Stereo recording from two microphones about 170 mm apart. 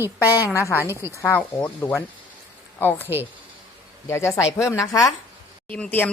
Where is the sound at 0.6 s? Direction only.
20° left (ahead or behind).